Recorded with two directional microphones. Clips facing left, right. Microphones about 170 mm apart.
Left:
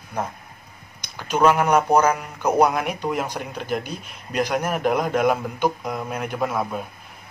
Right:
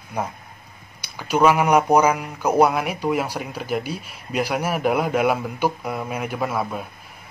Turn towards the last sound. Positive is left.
turn(degrees=0)  # may be behind; listen again after turning